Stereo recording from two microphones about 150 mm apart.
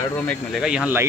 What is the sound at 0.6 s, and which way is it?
Speech, 5° right (ahead or behind).